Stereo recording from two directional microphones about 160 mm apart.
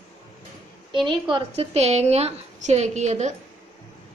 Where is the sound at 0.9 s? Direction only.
30° right (ahead or behind).